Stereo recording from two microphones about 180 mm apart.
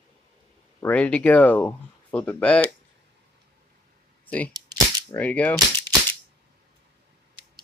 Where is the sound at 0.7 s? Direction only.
10° left (ahead or behind).